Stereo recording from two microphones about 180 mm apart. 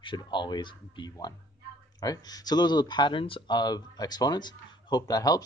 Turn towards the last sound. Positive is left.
turn(degrees=20)  # may be behind; listen again after turning